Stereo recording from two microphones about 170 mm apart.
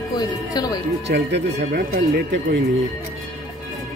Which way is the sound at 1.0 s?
80° right.